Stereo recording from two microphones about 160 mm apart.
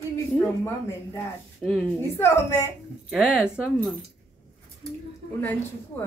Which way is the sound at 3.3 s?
5° right (ahead or behind).